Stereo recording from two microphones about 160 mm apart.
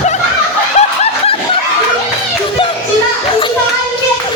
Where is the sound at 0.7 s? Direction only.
40° left (ahead or behind).